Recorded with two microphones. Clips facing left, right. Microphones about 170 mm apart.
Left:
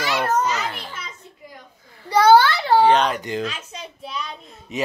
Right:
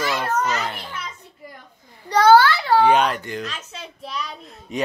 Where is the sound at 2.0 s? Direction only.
10° left (ahead or behind).